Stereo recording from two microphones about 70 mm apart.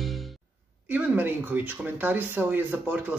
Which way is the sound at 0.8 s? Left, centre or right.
Right.